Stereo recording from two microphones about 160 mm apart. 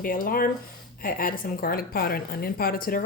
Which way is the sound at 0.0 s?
65° left (ahead or behind).